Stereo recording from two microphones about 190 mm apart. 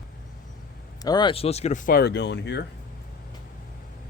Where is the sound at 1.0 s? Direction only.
20° left (ahead or behind); by 2.6 s 65° left (ahead or behind).